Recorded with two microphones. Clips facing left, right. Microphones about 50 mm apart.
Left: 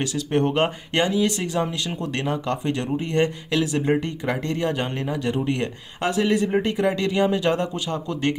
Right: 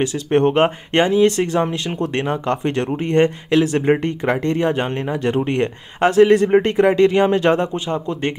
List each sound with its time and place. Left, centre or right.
0.0 s speech: right
7.9 s speech: right